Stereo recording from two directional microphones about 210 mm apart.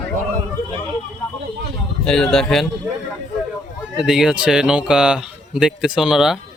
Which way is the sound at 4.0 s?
5° right (ahead or behind).